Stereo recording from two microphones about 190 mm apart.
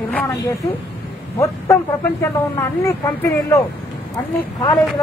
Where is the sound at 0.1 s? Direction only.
5° left (ahead or behind).